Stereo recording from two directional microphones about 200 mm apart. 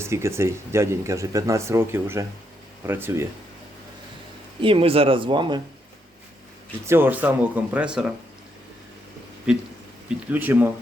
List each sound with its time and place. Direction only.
0.0 s speech: 15° right (ahead or behind)
4.6 s speech: 25° right (ahead or behind)
6.8 s speech: 10° right (ahead or behind)
10.2 s speech: 10° right (ahead or behind)